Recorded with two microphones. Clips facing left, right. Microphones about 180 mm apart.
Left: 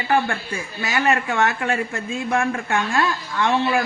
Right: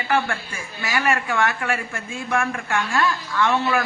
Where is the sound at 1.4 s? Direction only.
35° left (ahead or behind).